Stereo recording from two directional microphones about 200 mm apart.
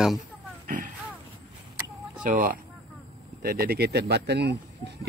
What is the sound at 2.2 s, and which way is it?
Speech, 40° right (ahead or behind).